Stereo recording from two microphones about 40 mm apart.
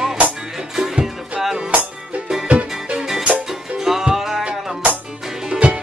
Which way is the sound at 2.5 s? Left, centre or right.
Right.